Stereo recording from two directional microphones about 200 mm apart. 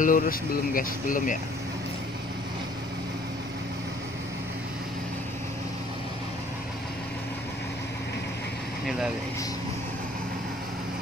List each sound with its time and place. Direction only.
0.0 s speech: 45° left (ahead or behind)